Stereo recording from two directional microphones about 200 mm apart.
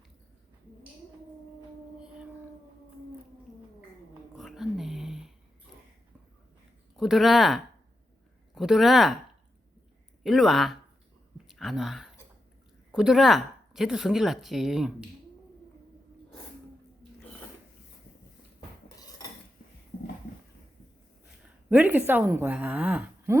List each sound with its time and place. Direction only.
4.4 s a sound: centre (ahead or behind)
6.9 s a woman's voice: centre (ahead or behind)
10.2 s a woman's voice: centre (ahead or behind)
19.2 s cutlery: 20° left (ahead or behind)
21.7 s a woman's voice: 10° right (ahead or behind)